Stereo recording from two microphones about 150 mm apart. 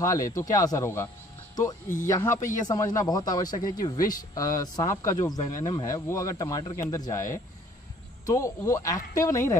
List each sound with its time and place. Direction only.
0.0 s speech: 20° left (ahead or behind)